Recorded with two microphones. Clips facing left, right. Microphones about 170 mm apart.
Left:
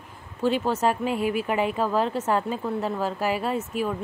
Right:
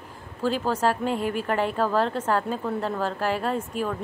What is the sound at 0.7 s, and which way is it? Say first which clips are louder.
A woman's voice: even; 10° left (ahead or behind).